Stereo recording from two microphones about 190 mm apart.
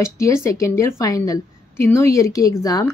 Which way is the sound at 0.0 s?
15° left (ahead or behind).